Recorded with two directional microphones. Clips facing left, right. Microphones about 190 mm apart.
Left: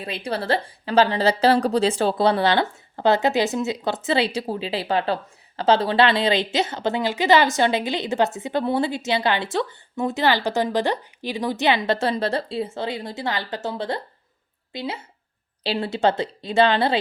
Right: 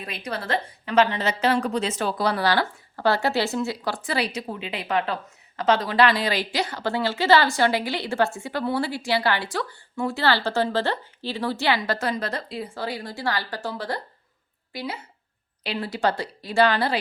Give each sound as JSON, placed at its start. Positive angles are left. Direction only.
{"t": 0.0, "sound": "a woman's voice", "side_deg": 30}